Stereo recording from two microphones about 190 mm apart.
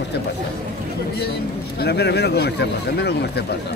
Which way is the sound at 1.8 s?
60° left (ahead or behind).